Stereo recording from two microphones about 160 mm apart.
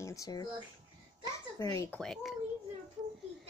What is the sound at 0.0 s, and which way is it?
Speech, 20° left (ahead or behind).